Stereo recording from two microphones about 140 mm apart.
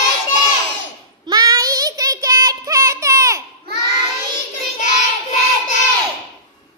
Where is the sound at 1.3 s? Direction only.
25° right (ahead or behind).